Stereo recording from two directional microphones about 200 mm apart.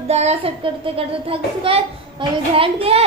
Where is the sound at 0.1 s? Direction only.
35° right (ahead or behind).